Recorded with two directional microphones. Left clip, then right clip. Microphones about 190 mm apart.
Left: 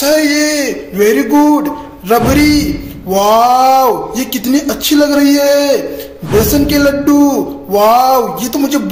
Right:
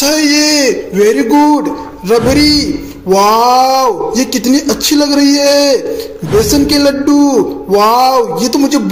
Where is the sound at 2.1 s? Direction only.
Centre (ahead or behind).